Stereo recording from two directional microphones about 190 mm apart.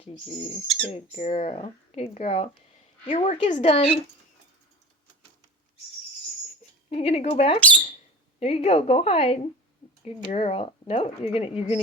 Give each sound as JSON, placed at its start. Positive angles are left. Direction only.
{"t": 0.9, "sound": "speech", "side_deg": 35}
{"t": 6.9, "sound": "speech", "side_deg": 30}